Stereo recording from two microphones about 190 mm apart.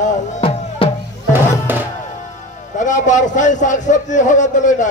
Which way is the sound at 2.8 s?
40° left (ahead or behind).